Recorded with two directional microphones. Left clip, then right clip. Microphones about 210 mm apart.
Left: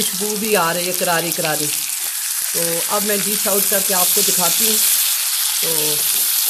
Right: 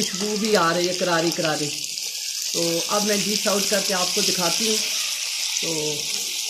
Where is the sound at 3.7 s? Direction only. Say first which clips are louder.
Left 3 dB; 55° left (ahead or behind).